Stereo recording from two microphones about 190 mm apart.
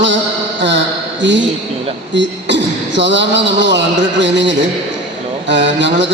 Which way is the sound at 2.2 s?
70° right (ahead or behind).